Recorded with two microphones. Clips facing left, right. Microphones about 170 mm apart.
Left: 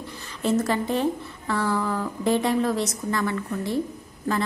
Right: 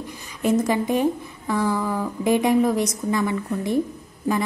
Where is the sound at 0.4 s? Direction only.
15° right (ahead or behind).